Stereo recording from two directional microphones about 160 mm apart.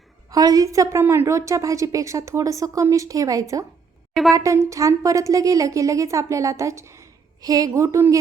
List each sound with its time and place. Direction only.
0.3 s a woman's voice: 20° right (ahead or behind)